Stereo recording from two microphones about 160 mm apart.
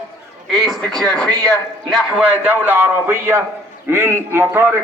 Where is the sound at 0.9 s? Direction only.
5° left (ahead or behind).